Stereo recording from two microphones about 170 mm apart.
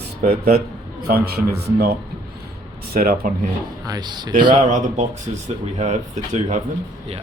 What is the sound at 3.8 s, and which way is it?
Speech, 25° right (ahead or behind).